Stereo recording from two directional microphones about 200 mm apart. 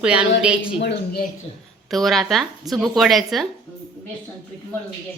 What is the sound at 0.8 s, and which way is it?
Speech, 60° left (ahead or behind).